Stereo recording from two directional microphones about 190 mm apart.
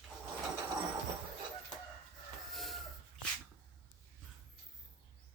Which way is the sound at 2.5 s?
Centre (ahead or behind).